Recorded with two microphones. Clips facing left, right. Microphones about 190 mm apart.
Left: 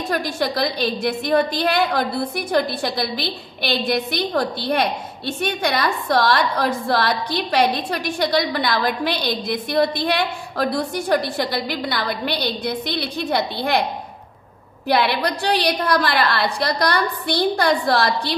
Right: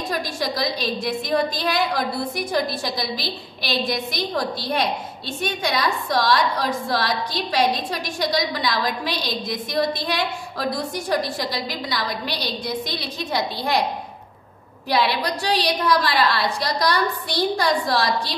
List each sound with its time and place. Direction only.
0.1 s a woman's voice: 60° left (ahead or behind)
14.9 s a woman's voice: 60° left (ahead or behind)